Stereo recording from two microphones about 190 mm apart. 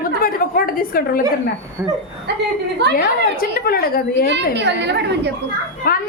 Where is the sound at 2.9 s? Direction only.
50° left (ahead or behind).